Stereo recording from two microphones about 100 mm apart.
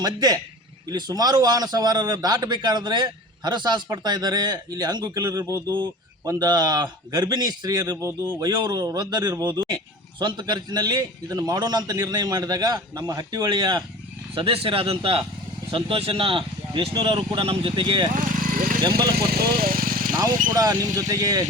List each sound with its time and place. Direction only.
0.0 s a man's voice: 45° right (ahead or behind)
14.3 s a man's voice: 70° right (ahead or behind); by 17.1 s 55° right (ahead or behind)
17.1 s speech: 65° right (ahead or behind); by 19.1 s 45° right (ahead or behind)
20.1 s a man's voice: 40° right (ahead or behind)